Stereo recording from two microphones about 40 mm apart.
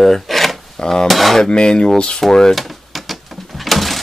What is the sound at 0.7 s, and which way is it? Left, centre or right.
Wood, centre.